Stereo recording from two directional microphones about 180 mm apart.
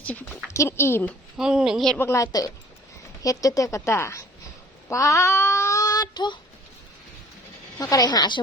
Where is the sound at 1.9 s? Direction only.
15° left (ahead or behind).